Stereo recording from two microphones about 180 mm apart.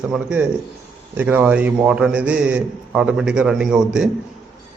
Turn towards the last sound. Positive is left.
turn(degrees=-5)  # may be behind; listen again after turning